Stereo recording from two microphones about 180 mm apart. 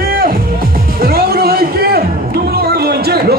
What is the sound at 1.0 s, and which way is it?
Music, 55° right (ahead or behind).